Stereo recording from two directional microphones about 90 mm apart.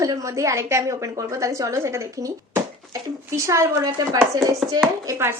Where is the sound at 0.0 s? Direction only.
40° right (ahead or behind).